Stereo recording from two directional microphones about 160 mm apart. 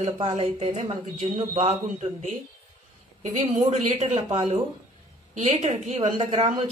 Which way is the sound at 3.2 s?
45° right (ahead or behind).